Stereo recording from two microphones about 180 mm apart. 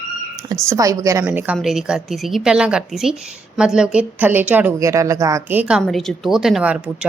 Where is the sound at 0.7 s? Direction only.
20° right (ahead or behind).